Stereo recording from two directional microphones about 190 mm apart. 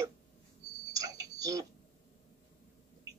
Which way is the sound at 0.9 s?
20° right (ahead or behind).